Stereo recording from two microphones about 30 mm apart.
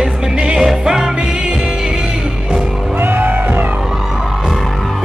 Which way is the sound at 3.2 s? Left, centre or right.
Right.